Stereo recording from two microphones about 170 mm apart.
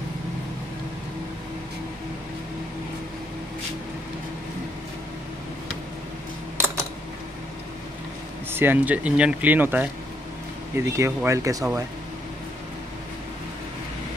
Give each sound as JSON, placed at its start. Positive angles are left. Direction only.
{"t": 8.5, "sound": "speech", "side_deg": -10}